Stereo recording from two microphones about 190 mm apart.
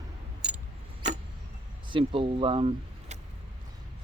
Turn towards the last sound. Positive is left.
turn(degrees=-30)  # may be behind; listen again after turning